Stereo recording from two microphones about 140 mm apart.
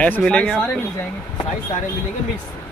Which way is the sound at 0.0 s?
10° left (ahead or behind).